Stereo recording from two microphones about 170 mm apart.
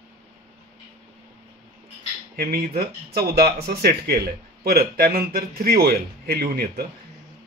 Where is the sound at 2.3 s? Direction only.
65° right (ahead or behind).